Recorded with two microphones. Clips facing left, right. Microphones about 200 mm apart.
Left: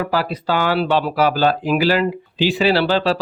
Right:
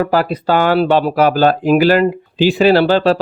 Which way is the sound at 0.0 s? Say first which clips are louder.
Right 6 dB; 50° right (ahead or behind).